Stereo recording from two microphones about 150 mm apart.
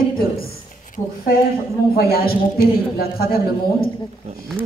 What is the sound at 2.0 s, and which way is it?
A man's voice, 85° left.